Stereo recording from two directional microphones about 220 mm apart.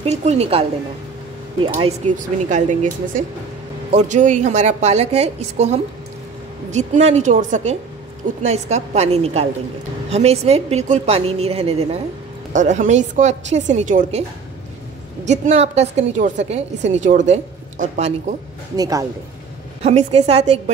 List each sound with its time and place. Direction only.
0.0 s a woman's voice: 30° right (ahead or behind)
2.1 s a woman's voice: 35° right (ahead or behind)
15.2 s a woman's voice: 30° right (ahead or behind)
18.8 s a man's voice: 15° right (ahead or behind)
19.8 s a woman's voice: 30° right (ahead or behind)